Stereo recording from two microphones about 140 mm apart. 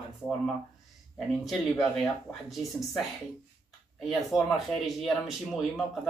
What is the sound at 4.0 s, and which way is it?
Speech, centre (ahead or behind).